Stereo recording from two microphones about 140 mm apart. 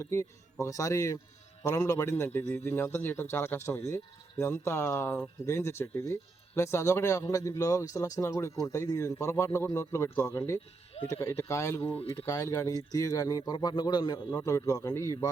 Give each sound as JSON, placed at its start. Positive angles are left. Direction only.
{"t": 0.0, "sound": "a man's voice", "side_deg": 20}